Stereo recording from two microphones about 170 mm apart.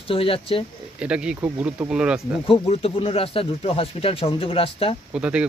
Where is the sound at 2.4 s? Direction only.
35° left (ahead or behind).